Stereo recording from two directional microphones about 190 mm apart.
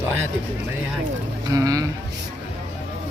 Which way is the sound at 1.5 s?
20° right (ahead or behind).